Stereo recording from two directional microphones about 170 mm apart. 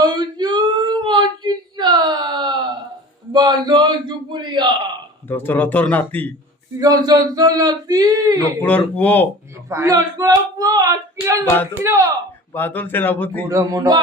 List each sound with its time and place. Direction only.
0.0 s a sound: 25° right (ahead or behind)
5.3 s speech: 10° left (ahead or behind)
6.7 s speech: 20° right (ahead or behind)
8.6 s speech: 10° left (ahead or behind)
9.6 s speech: 15° right (ahead or behind)
11.4 s speech: 15° left (ahead or behind)
11.8 s speech: 15° right (ahead or behind)
12.5 s speech: 10° left (ahead or behind)
13.5 s speech: 20° right (ahead or behind)